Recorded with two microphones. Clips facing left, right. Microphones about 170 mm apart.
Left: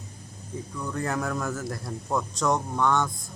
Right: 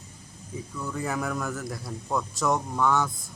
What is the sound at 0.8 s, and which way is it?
A man's voice, centre (ahead or behind).